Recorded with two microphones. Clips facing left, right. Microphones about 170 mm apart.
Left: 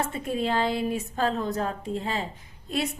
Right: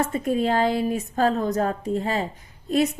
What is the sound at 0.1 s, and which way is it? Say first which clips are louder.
A woman's voice: right 5 dB; 45° right (ahead or behind).